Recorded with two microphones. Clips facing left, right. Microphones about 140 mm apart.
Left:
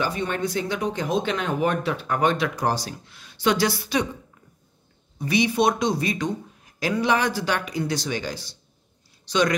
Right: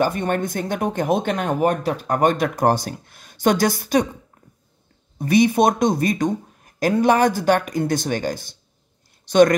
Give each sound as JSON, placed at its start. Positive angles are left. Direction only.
{"t": 0.0, "sound": "speech", "side_deg": -50}
{"t": 5.2, "sound": "speech", "side_deg": -50}